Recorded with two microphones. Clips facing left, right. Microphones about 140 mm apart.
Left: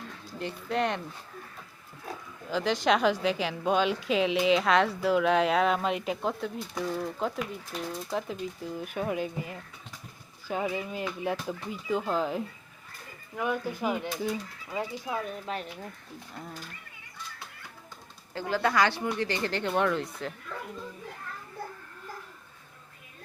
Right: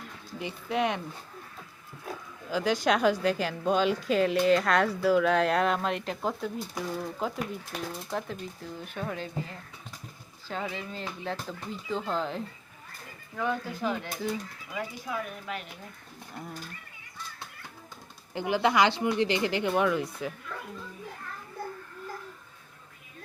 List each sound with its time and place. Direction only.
0.3 s speech: 5° right (ahead or behind)
2.5 s speech: 5° right (ahead or behind)
14.8 s speech: 30° left (ahead or behind)
18.3 s speech: 20° right (ahead or behind)